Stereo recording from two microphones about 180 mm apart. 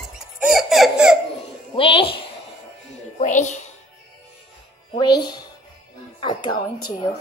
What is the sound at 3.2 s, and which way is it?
Speech, 40° left (ahead or behind).